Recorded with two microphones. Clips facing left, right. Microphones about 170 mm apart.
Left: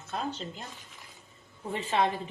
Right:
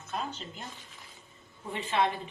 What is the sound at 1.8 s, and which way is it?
Speech, 40° left (ahead or behind).